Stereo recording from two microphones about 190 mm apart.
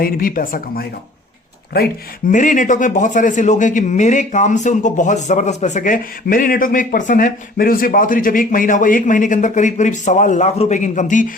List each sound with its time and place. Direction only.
0.0 s speech: 50° left (ahead or behind)
2.3 s speech: 45° left (ahead or behind)